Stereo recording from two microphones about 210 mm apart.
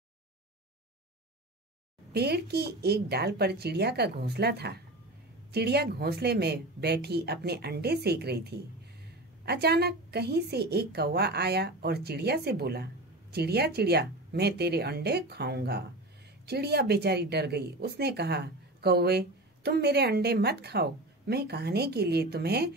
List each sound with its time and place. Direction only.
2.1 s speech: 50° right (ahead or behind)